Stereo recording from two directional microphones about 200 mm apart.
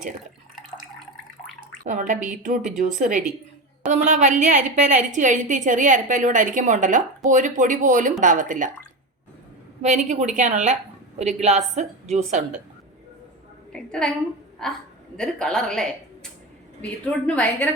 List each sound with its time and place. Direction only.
1.8 s a woman's voice: 40° right (ahead or behind)
9.8 s a woman's voice: 35° right (ahead or behind)
13.7 s a woman's voice: 5° left (ahead or behind)